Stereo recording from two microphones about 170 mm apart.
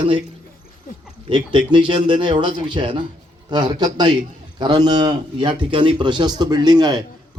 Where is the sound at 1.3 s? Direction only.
30° right (ahead or behind).